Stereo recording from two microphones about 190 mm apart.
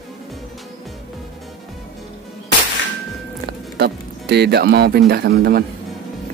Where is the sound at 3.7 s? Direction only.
60° right (ahead or behind).